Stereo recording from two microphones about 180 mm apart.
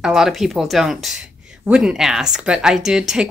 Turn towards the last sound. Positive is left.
turn(degrees=-5)  # may be behind; listen again after turning